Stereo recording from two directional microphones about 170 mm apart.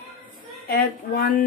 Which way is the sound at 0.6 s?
55° left (ahead or behind).